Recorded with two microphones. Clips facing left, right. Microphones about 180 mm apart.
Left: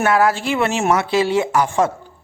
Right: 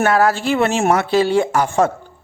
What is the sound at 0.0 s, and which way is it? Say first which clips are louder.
Speech: right 1 dB; 35° right (ahead or behind).